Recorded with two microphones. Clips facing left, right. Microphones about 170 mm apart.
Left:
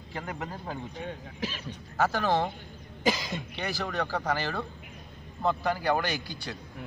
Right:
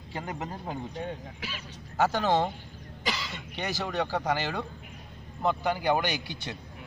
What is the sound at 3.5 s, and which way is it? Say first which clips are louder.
A man's voice: right 2 dB; 20° right (ahead or behind).